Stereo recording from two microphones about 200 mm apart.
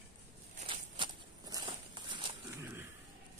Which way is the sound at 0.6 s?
25° right (ahead or behind).